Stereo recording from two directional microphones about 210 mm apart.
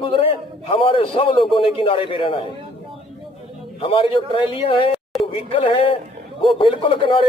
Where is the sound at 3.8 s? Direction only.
25° left (ahead or behind).